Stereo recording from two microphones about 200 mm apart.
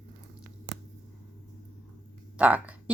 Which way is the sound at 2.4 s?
5° right (ahead or behind).